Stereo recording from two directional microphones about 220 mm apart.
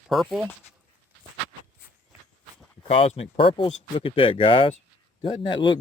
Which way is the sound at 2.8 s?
25° left (ahead or behind).